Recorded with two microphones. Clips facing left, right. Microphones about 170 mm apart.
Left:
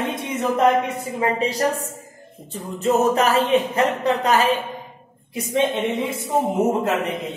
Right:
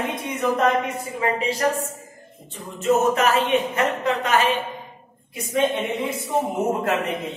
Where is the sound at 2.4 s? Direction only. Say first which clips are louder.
Even; 35° left (ahead or behind).